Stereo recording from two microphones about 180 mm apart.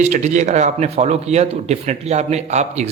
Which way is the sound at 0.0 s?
40° right (ahead or behind).